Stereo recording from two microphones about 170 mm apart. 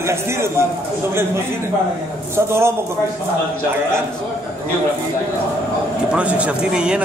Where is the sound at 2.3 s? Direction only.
15° right (ahead or behind).